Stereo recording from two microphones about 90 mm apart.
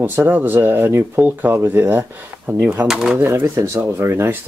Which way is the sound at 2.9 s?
5° right (ahead or behind).